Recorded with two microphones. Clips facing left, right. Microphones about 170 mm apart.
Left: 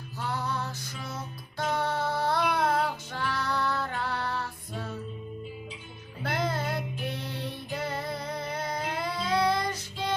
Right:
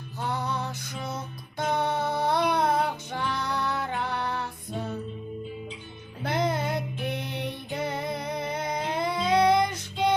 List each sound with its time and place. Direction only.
0.2 s music: 20° right (ahead or behind)
6.2 s music: 20° right (ahead or behind)